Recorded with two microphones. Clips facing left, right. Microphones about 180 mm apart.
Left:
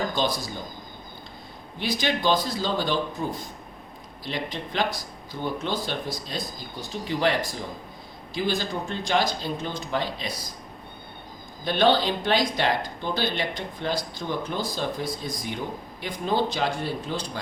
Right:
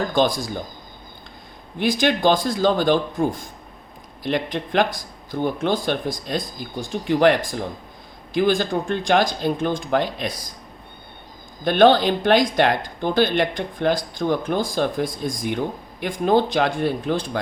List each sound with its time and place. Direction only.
0.1 s speech: 50° right (ahead or behind)
1.8 s speech: 50° right (ahead or behind)
11.6 s speech: 55° right (ahead or behind)